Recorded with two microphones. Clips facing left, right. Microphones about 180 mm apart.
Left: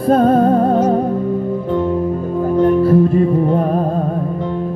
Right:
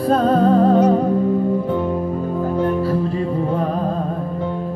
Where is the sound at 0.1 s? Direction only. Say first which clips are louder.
Left 4 dB; 50° left (ahead or behind).